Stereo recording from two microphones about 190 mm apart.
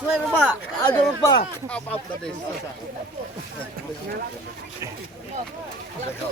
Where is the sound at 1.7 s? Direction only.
5° left (ahead or behind).